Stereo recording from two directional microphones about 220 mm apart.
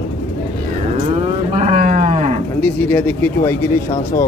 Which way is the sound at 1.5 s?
30° right (ahead or behind).